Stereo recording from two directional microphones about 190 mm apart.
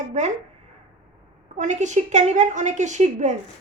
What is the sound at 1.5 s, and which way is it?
A woman's voice, 40° right (ahead or behind).